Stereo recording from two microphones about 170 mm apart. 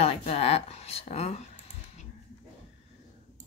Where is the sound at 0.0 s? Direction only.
35° left (ahead or behind).